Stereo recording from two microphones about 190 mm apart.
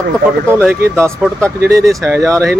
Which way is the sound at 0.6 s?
10° right (ahead or behind).